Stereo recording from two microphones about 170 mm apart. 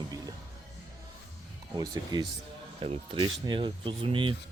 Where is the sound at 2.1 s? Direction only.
25° right (ahead or behind).